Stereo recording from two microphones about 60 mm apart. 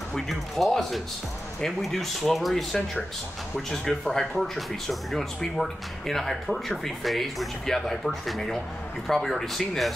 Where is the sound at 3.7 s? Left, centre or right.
Centre.